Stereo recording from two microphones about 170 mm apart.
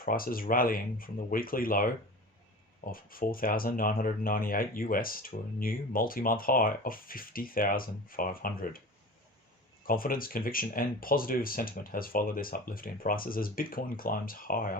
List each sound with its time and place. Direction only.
0.0 s speech: 55° left (ahead or behind)
9.8 s speech: 55° left (ahead or behind)